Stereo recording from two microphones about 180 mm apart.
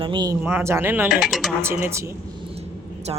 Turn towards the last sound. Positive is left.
turn(degrees=-30)  # may be behind; listen again after turning